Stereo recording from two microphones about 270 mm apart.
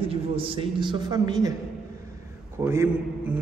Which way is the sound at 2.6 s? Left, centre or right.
Centre.